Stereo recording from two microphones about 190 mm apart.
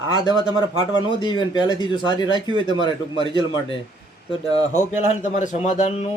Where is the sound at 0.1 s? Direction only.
20° left (ahead or behind); by 6.1 s 40° left (ahead or behind).